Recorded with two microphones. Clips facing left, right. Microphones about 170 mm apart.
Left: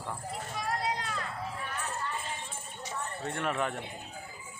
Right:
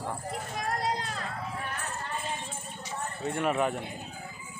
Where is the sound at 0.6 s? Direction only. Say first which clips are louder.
Right 2 dB; 40° right (ahead or behind).